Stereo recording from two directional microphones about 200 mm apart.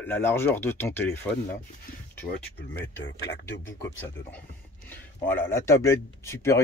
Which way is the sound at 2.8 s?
55° left (ahead or behind).